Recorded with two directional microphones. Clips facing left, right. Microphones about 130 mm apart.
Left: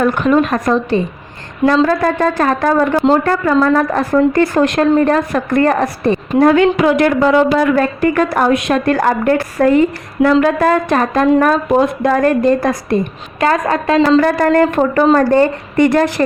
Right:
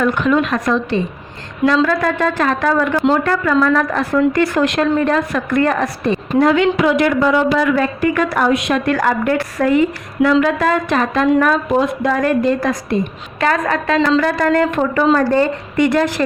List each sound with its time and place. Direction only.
0.0 s a woman's voice: 45° left (ahead or behind)